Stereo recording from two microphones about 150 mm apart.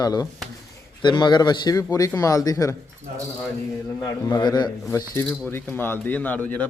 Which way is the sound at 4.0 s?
25° left (ahead or behind).